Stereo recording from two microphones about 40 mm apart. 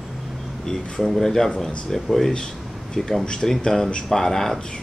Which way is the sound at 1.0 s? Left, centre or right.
Centre.